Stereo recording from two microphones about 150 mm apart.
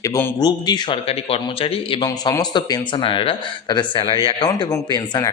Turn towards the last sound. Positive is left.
turn(degrees=25)  # may be behind; listen again after turning